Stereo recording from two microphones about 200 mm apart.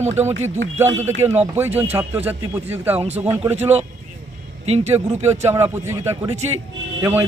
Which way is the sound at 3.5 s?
30° right (ahead or behind).